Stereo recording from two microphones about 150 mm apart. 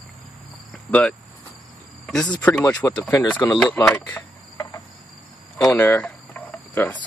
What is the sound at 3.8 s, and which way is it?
Speech, 5° left (ahead or behind).